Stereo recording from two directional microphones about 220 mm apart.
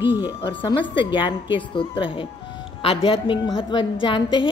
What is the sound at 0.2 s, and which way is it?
A woman's voice, 20° left (ahead or behind).